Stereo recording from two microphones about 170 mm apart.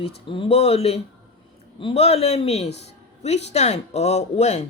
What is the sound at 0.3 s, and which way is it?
Speech, 35° left (ahead or behind).